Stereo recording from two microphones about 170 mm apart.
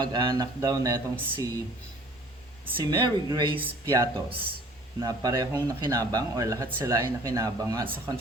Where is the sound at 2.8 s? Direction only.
25° right (ahead or behind).